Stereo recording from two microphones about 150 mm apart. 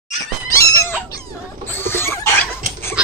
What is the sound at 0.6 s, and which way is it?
Cat, 20° left (ahead or behind).